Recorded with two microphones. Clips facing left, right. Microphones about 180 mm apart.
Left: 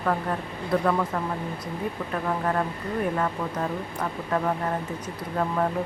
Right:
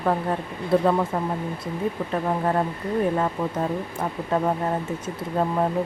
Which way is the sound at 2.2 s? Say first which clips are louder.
Right 2 dB; 25° right (ahead or behind).